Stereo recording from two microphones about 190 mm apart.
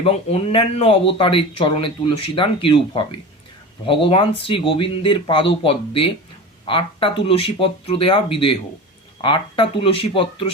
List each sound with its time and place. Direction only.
0.0 s speech: 30° left (ahead or behind)
9.2 s speech: 25° left (ahead or behind)